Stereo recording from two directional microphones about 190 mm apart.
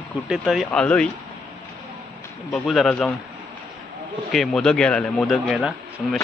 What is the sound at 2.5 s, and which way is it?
Speech, centre (ahead or behind).